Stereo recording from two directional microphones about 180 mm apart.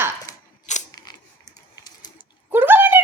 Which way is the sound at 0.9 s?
20° left (ahead or behind).